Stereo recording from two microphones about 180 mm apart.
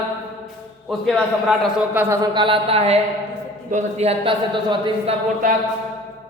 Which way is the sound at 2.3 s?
30° right (ahead or behind).